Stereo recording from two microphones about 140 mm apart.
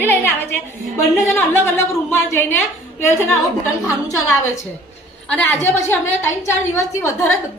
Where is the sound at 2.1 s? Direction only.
15° left (ahead or behind).